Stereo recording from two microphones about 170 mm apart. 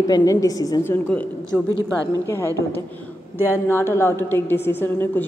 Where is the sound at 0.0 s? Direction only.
20° left (ahead or behind).